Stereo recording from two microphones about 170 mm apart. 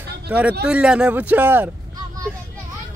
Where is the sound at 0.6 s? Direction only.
5° right (ahead or behind).